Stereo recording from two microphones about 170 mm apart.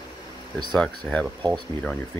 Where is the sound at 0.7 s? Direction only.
5° left (ahead or behind).